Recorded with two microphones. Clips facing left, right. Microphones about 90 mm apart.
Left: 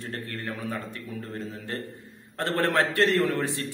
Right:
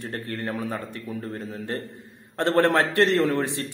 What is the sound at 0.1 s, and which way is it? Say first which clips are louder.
A man's voice: right 4 dB; 20° right (ahead or behind).